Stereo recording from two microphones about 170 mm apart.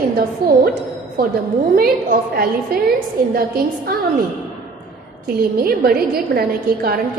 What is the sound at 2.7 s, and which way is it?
Speech, 65° right (ahead or behind).